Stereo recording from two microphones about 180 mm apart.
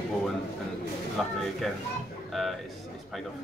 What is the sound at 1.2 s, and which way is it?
Speech, centre (ahead or behind).